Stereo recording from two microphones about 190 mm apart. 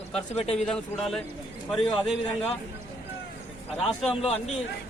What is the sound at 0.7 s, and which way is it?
Speech, centre (ahead or behind).